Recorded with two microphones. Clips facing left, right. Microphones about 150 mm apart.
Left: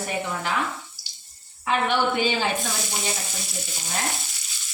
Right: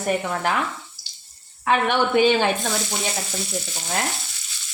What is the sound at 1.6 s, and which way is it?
Speech, 60° right (ahead or behind).